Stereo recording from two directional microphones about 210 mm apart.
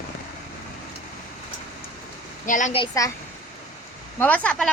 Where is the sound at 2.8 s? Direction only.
15° left (ahead or behind).